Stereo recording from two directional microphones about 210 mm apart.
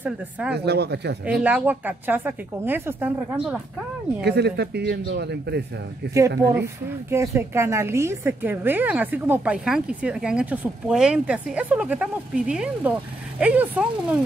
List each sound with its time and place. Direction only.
0.0 s speech: 5° right (ahead or behind)
0.6 s speech: 50° right (ahead or behind)
1.2 s a woman's voice: 5° right (ahead or behind)
4.2 s speech: 50° right (ahead or behind)
6.5 s a woman's voice: 10° right (ahead or behind)